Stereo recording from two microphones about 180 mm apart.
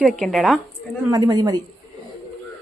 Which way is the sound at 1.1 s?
20° right (ahead or behind).